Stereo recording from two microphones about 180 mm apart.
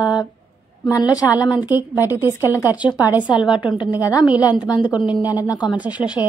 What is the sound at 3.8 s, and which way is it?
A woman's voice, 20° left (ahead or behind).